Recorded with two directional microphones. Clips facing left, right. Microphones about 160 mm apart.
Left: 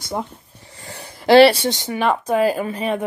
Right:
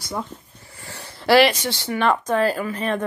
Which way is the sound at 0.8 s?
20° left (ahead or behind).